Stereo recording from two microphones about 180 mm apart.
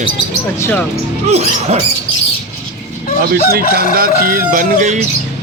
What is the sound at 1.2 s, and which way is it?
Speech, 35° right (ahead or behind).